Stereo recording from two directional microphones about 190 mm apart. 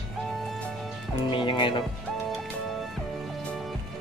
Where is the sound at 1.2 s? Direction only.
25° left (ahead or behind).